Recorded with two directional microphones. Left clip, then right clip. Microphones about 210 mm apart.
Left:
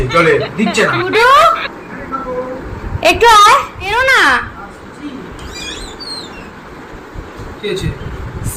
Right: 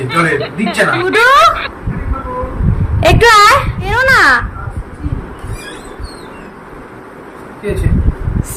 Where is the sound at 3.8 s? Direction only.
10° right (ahead or behind).